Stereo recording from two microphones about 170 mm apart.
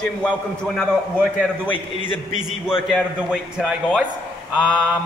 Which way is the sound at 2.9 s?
5° right (ahead or behind).